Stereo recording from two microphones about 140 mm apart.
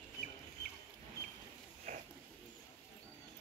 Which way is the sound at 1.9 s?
60° right (ahead or behind).